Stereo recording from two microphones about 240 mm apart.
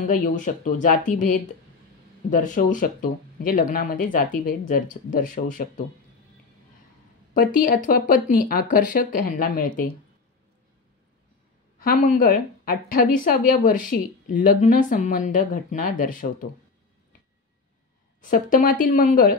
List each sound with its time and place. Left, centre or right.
0.1 s a woman's voice: left
7.3 s a woman's voice: left
11.8 s a woman's voice: left
18.2 s a woman's voice: left